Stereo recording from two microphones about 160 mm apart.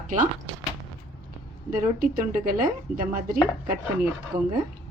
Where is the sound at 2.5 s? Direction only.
65° right (ahead or behind).